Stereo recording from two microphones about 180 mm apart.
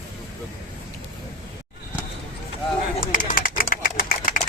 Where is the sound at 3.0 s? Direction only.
50° left (ahead or behind).